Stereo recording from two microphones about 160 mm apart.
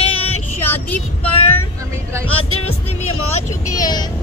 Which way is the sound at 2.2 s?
40° left (ahead or behind).